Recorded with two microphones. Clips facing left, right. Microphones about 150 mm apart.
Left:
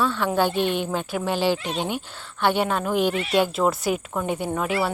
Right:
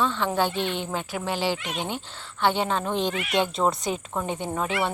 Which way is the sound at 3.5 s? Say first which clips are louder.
Left 2 dB; 5° left (ahead or behind).